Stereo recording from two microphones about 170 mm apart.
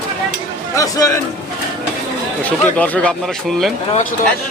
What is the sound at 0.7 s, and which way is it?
Speech, 20° left (ahead or behind).